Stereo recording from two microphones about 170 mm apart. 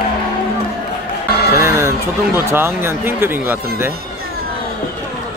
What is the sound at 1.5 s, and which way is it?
Music, 15° right (ahead or behind).